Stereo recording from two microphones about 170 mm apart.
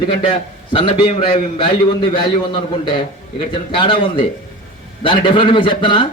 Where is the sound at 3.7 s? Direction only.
30° left (ahead or behind).